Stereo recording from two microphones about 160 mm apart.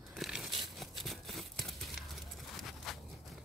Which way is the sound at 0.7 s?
Centre (ahead or behind).